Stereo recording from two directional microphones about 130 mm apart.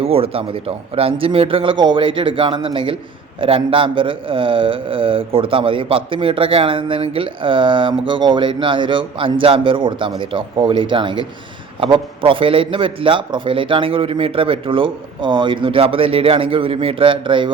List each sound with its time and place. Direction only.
0.0 s a man's voice: 50° right (ahead or behind)